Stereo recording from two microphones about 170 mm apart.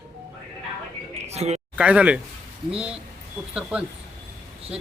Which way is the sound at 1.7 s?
5° right (ahead or behind).